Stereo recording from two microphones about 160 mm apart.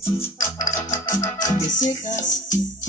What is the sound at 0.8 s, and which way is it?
Keyboard, 20° left (ahead or behind).